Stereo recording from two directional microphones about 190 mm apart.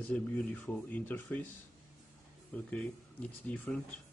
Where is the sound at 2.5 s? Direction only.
5° left (ahead or behind).